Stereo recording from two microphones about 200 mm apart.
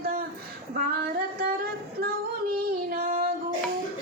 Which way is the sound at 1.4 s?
50° right (ahead or behind).